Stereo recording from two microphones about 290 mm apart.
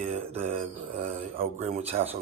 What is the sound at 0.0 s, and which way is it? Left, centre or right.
Speech, right.